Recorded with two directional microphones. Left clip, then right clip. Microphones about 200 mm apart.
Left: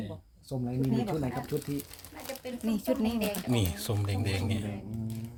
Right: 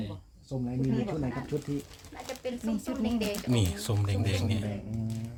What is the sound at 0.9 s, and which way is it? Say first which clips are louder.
Speech: left 3 dB; 50° left (ahead or behind).